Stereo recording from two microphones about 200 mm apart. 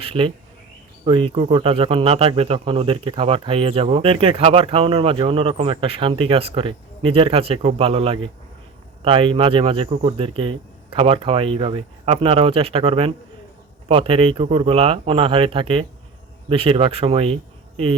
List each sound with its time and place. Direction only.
0.0 s speech: 30° right (ahead or behind)